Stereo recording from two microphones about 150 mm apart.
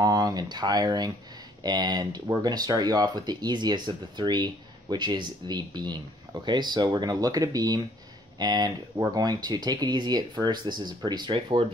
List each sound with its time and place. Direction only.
0.0 s speech: 25° right (ahead or behind)